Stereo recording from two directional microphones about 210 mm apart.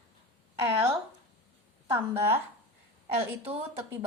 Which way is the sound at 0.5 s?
10° right (ahead or behind).